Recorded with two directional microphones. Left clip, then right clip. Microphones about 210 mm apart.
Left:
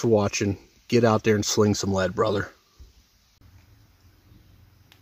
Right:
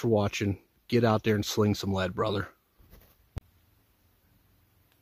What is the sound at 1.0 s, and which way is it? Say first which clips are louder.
Speech: left 5 dB; 20° right (ahead or behind).